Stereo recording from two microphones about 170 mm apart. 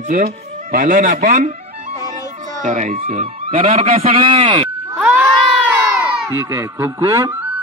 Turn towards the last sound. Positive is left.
turn(degrees=-20)  # may be behind; listen again after turning